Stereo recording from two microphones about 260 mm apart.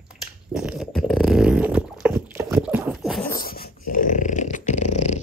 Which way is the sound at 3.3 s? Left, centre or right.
Left.